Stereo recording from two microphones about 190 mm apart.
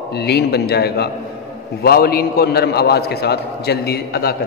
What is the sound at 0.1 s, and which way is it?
A man's voice, 60° left (ahead or behind).